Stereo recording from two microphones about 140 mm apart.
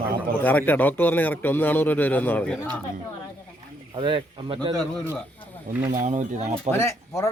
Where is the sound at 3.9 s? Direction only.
35° right (ahead or behind).